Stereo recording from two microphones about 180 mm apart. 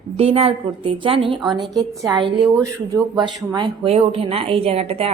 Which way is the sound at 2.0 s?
25° right (ahead or behind).